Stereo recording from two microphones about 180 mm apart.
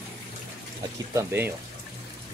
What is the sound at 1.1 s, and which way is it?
Speech, 10° right (ahead or behind).